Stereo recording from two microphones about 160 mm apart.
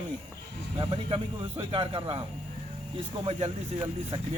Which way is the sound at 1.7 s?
35° right (ahead or behind).